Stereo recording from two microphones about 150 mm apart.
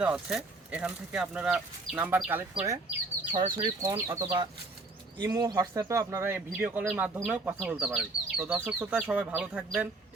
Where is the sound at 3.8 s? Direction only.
20° right (ahead or behind).